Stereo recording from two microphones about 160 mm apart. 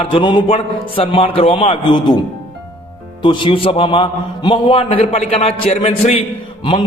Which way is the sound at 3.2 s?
30° left (ahead or behind).